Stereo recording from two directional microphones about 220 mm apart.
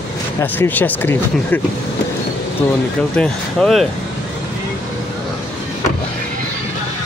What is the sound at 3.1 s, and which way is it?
Speech, 5° left (ahead or behind).